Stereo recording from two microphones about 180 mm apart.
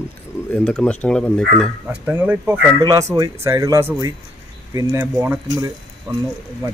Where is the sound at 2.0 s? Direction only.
10° right (ahead or behind).